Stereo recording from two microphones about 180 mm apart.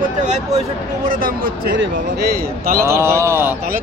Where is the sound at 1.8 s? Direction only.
60° right (ahead or behind).